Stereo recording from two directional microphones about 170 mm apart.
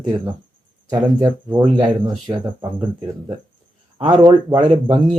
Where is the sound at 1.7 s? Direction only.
25° right (ahead or behind).